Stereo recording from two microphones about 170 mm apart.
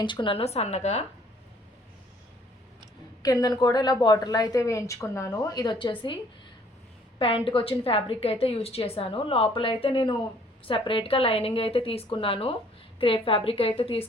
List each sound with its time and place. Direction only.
0.0 s a woman's voice: 30° left (ahead or behind)
3.4 s a woman's voice: 25° left (ahead or behind)
7.2 s a woman's voice: 30° left (ahead or behind)